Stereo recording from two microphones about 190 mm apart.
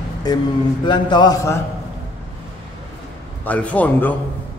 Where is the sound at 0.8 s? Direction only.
25° left (ahead or behind).